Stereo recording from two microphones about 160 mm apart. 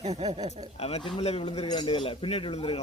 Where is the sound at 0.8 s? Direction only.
40° left (ahead or behind).